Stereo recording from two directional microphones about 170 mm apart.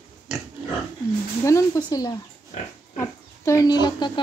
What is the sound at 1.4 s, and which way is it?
Speech, 20° left (ahead or behind).